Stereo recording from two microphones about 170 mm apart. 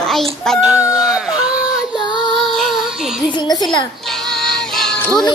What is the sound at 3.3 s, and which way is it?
Speech, 25° left (ahead or behind).